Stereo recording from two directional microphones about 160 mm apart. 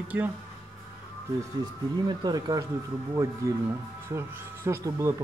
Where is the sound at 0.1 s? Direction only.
10° right (ahead or behind).